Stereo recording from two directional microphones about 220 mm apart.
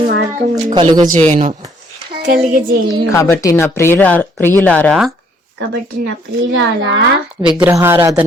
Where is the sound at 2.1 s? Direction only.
45° right (ahead or behind).